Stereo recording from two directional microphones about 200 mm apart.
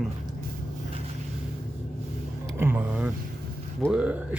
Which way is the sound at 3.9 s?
5° right (ahead or behind).